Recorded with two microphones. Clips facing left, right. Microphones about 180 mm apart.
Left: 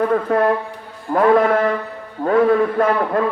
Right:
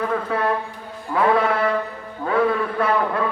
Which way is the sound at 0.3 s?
50° left (ahead or behind).